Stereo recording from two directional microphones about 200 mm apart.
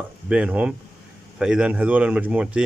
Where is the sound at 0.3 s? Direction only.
5° right (ahead or behind).